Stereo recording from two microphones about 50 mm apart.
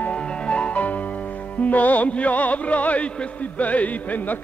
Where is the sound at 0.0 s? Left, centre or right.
Left.